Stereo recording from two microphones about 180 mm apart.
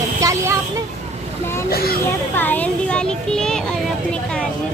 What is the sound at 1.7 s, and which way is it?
Speech, 60° left (ahead or behind).